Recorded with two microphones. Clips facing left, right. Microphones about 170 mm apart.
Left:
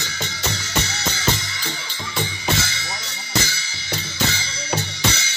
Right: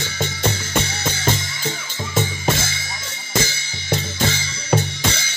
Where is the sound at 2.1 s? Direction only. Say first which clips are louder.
Right 3 dB; 50° right (ahead or behind).